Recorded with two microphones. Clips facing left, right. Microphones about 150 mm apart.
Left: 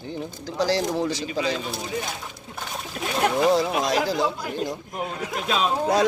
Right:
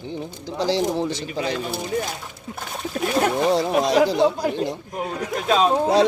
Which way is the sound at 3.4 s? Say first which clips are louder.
Right 1 dB; 35° right (ahead or behind).